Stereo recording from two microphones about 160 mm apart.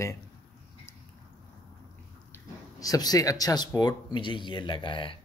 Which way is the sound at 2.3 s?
20° left (ahead or behind).